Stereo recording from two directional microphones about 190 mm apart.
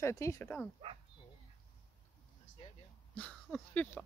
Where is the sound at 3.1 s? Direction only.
10° left (ahead or behind).